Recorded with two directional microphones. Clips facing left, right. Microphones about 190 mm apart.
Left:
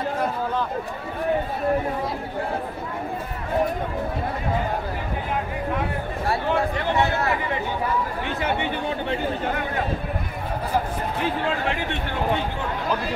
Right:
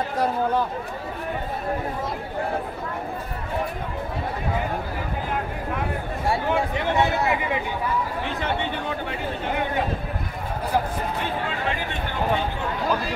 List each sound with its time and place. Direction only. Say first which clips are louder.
6.5 s speech: even; 15° right (ahead or behind)